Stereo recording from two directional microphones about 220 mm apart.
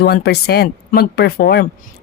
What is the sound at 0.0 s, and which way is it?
Speech, 45° left (ahead or behind).